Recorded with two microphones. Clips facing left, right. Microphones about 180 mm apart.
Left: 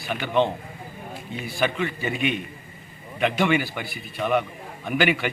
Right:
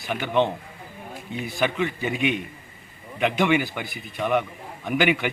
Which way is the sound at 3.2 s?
15° right (ahead or behind).